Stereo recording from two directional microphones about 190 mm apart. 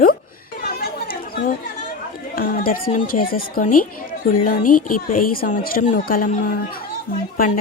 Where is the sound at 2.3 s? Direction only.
50° left (ahead or behind).